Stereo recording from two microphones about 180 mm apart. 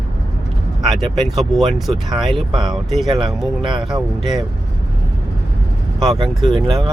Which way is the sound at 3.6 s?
25° right (ahead or behind).